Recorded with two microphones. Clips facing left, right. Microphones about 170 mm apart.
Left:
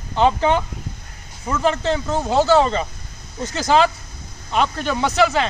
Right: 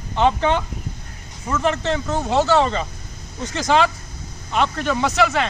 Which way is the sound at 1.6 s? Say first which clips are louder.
Left 2 dB; 35° left (ahead or behind).